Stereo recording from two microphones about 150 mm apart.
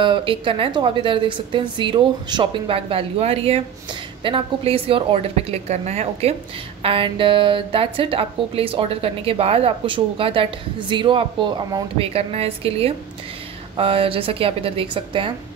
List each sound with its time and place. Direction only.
0.0 s a woman's voice: 35° right (ahead or behind)
6.8 s a woman's voice: 35° right (ahead or behind)